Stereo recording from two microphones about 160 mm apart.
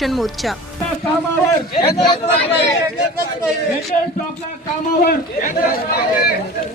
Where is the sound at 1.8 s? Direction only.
30° left (ahead or behind).